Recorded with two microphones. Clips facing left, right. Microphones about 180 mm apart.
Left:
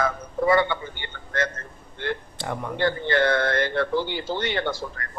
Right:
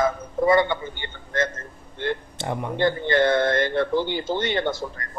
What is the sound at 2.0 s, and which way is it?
A man's voice, 20° right (ahead or behind).